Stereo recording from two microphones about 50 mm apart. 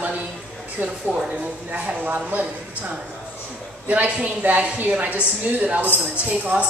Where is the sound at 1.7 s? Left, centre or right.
Right.